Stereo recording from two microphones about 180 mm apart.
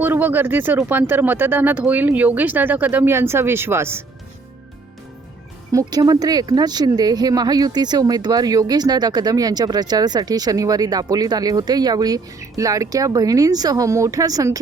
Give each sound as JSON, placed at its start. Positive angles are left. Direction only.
{"t": 0.0, "sound": "speech", "side_deg": -10}
{"t": 5.7, "sound": "speech", "side_deg": -20}